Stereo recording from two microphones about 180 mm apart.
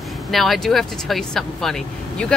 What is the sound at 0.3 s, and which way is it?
Speech, centre (ahead or behind).